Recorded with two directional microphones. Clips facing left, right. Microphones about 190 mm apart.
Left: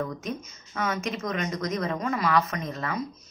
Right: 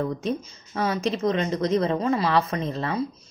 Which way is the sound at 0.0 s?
30° right (ahead or behind).